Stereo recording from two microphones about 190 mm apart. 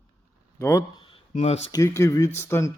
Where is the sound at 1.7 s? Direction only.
15° left (ahead or behind).